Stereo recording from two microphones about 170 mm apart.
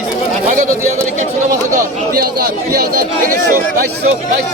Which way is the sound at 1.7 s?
60° right (ahead or behind).